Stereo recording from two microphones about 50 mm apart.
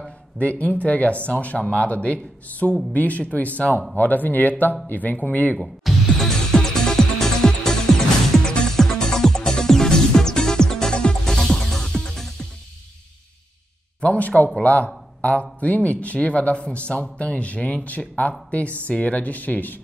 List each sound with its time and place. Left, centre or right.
0.4 s speech: left
5.6 s music: centre
14.0 s speech: left